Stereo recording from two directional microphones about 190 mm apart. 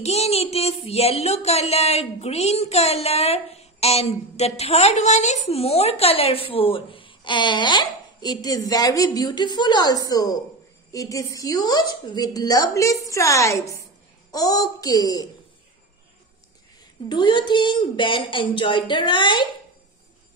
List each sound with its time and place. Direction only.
0.0 s a sound: 35° left (ahead or behind); by 10.4 s 20° left (ahead or behind)
10.9 s a woman's voice: 15° left (ahead or behind)
17.1 s speech: 25° left (ahead or behind)